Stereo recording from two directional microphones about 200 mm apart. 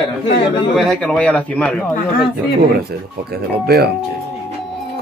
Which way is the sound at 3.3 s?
50° right (ahead or behind).